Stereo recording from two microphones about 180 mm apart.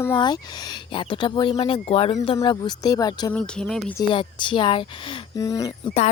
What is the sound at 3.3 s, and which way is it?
Speech, 5° left (ahead or behind).